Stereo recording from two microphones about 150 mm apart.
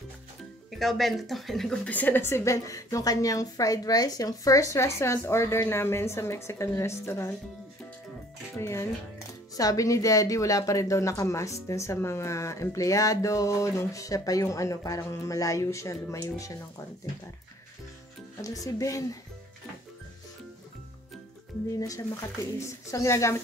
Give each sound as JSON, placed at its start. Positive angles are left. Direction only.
{"t": 0.7, "sound": "speech", "side_deg": 0}
{"t": 8.5, "sound": "speech", "side_deg": 20}
{"t": 18.4, "sound": "speech", "side_deg": 25}
{"t": 21.7, "sound": "speech", "side_deg": 25}